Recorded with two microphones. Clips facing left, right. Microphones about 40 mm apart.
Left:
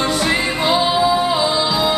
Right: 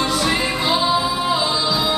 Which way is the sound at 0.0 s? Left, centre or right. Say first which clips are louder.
Left 2 dB; centre.